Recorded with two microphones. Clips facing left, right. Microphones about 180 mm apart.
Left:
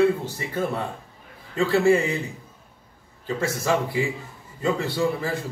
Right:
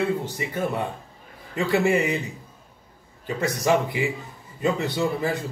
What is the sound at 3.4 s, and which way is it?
A man's voice, 20° right (ahead or behind).